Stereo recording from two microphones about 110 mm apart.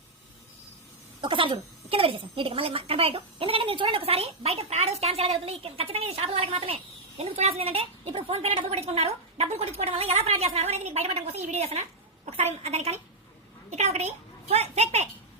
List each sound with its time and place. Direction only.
1.2 s a woman's voice: 50° right (ahead or behind)
7.2 s a woman's voice: 70° right (ahead or behind)
13.7 s a child's voice: 90° right